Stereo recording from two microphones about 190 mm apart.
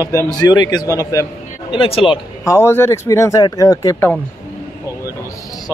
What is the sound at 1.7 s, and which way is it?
Speech, 30° left (ahead or behind).